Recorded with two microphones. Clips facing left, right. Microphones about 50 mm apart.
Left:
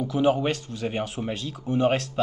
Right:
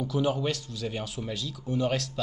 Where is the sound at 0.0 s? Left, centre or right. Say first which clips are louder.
Left 5 dB; left.